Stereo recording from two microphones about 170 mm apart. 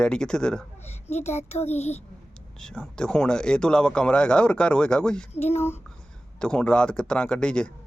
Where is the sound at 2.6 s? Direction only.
5° left (ahead or behind).